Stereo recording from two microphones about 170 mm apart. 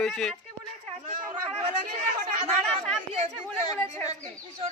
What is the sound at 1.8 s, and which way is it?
Chatter, 45° right (ahead or behind).